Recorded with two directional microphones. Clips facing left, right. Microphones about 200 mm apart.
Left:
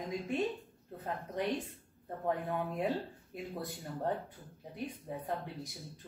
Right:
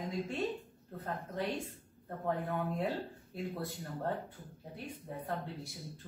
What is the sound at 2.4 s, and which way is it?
Speech, centre (ahead or behind).